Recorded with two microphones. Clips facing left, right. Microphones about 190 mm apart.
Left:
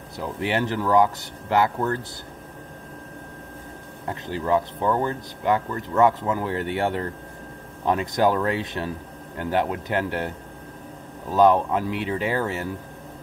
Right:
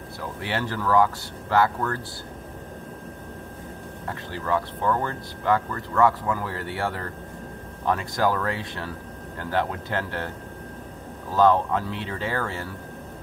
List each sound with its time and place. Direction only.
0.2 s speech: 20° left (ahead or behind)
4.1 s speech: 15° left (ahead or behind)
11.3 s speech: 15° left (ahead or behind)